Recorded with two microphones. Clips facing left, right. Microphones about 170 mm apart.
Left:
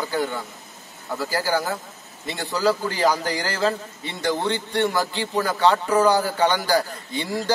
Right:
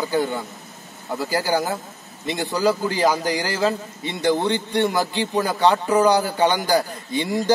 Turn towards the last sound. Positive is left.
turn(degrees=-15)  # may be behind; listen again after turning